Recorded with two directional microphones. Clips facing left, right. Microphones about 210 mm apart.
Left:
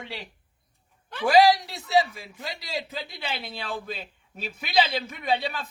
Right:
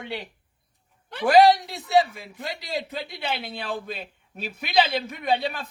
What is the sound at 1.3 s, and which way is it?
Speech, 55° right (ahead or behind).